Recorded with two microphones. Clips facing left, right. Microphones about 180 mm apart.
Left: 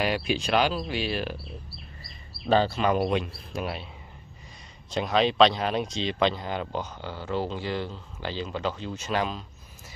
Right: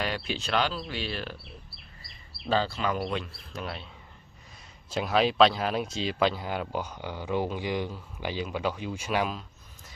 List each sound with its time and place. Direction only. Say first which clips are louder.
0.0 s speech: left 5 dB; 10° left (ahead or behind)
2.5 s speech: left 5 dB; 20° left (ahead or behind)
4.9 s speech: left 1 dB; 5° right (ahead or behind)